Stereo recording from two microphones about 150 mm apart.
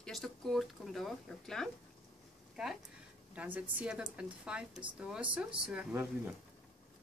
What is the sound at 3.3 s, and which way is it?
Speech, 10° right (ahead or behind).